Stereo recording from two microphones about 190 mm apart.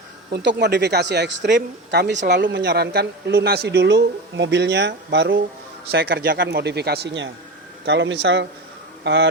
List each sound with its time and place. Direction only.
0.3 s speech: 60° right (ahead or behind)
5.9 s speech: 55° right (ahead or behind)